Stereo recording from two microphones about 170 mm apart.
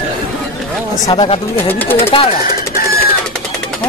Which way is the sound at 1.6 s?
10° left (ahead or behind).